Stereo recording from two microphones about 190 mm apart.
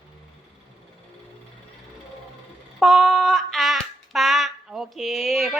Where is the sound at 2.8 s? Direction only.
Centre (ahead or behind).